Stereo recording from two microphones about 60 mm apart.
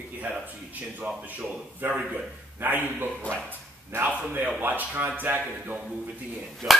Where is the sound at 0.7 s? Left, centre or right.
Right.